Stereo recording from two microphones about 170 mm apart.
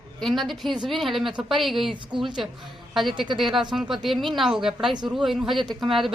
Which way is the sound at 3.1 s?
30° right (ahead or behind).